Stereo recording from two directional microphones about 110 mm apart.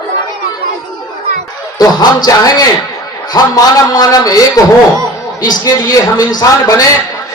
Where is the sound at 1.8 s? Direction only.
35° left (ahead or behind).